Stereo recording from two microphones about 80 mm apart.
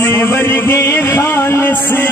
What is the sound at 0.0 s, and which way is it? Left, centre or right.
Music, left.